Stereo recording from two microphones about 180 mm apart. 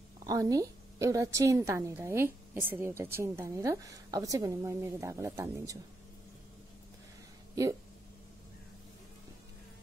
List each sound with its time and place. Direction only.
0.2 s a woman's voice: 20° right (ahead or behind)